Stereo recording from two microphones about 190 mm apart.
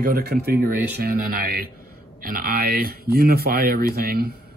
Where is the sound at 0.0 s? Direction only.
55° right (ahead or behind).